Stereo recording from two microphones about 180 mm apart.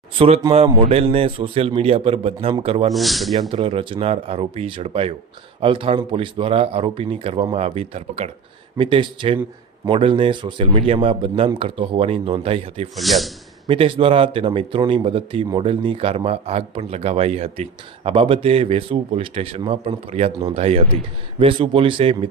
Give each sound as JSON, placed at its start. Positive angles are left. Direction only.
{"t": 0.5, "sound": "a man's voice", "side_deg": -35}
{"t": 2.9, "sound": "speech", "side_deg": 0}
{"t": 3.5, "sound": "a man's voice", "side_deg": -30}
{"t": 13.0, "sound": "speech", "side_deg": 0}
{"t": 13.7, "sound": "a man's voice", "side_deg": -30}